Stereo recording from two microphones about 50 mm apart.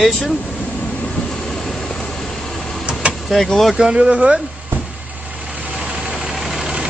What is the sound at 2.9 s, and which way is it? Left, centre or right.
Vehicle, centre.